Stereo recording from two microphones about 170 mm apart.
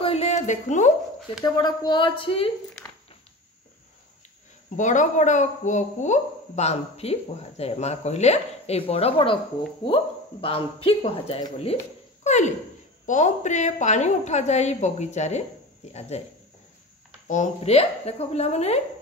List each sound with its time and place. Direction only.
0.0 s a sound: 40° left (ahead or behind)
1.4 s speech: 25° left (ahead or behind)
4.7 s a woman's voice: 45° left (ahead or behind); by 9.4 s 30° left (ahead or behind)
10.4 s a woman's voice: 35° left (ahead or behind)
17.3 s a woman's voice: 40° left (ahead or behind)